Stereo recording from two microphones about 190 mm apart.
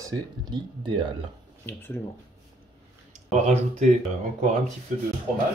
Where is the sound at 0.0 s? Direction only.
20° right (ahead or behind).